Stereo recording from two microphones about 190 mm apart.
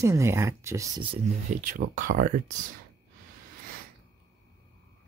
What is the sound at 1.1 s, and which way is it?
Speech, 40° right (ahead or behind).